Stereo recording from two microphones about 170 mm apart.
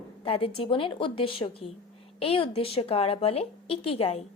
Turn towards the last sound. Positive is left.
turn(degrees=35)  # may be behind; listen again after turning